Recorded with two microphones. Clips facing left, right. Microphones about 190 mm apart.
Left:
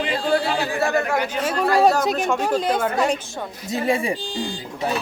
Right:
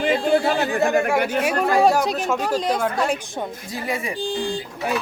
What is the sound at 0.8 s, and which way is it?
Speech, 15° right (ahead or behind).